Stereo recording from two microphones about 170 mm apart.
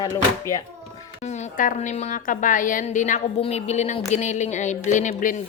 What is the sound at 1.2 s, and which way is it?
Speech, 40° left (ahead or behind).